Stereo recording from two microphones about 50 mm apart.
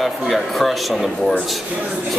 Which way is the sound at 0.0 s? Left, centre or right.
Centre.